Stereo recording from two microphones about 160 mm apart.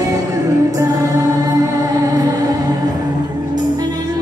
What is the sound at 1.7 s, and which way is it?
Music, 20° right (ahead or behind).